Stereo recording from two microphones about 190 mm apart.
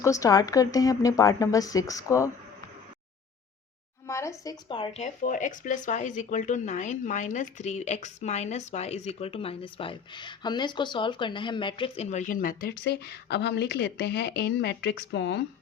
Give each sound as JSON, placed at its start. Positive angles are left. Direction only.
{"t": 0.0, "sound": "a woman's voice", "side_deg": 15}
{"t": 4.0, "sound": "speech", "side_deg": 15}